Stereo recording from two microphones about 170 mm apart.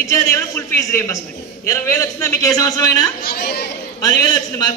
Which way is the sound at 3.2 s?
65° left (ahead or behind).